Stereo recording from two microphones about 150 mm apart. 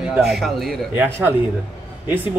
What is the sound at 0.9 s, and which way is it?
Speech, 15° right (ahead or behind).